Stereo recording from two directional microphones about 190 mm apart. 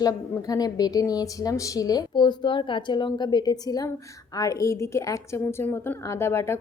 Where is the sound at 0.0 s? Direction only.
20° left (ahead or behind).